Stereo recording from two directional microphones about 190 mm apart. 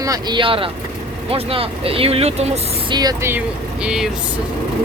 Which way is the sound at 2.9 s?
20° right (ahead or behind).